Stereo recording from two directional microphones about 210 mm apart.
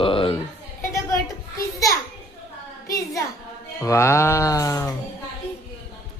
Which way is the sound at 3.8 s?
15° left (ahead or behind).